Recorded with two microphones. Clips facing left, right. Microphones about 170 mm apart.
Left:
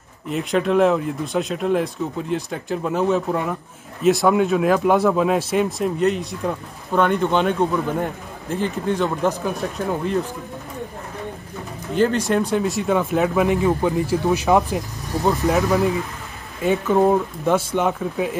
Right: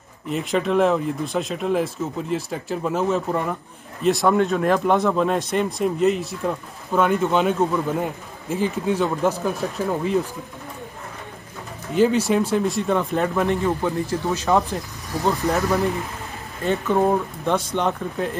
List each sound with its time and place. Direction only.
0.3 s speech: centre (ahead or behind)
11.9 s speech: 5° right (ahead or behind); by 14.8 s 15° left (ahead or behind)
15.2 s speech: centre (ahead or behind)